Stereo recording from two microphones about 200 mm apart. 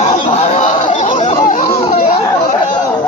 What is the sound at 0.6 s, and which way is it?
Fowl, 40° left (ahead or behind).